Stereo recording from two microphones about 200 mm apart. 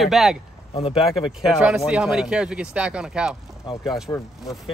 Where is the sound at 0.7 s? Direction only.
30° left (ahead or behind).